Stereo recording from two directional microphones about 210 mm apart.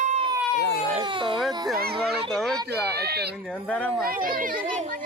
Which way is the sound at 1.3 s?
Centre (ahead or behind).